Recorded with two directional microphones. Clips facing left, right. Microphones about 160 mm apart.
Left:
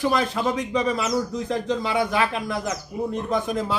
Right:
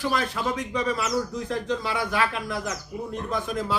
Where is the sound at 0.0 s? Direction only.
25° left (ahead or behind).